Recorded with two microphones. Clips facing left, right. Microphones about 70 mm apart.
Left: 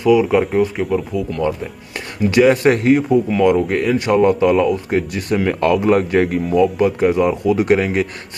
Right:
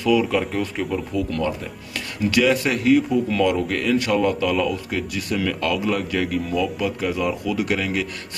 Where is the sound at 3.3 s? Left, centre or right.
Left.